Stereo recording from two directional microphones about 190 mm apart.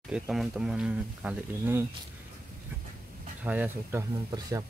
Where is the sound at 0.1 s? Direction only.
5° right (ahead or behind).